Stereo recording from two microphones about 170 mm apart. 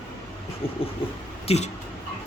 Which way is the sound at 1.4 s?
40° left (ahead or behind).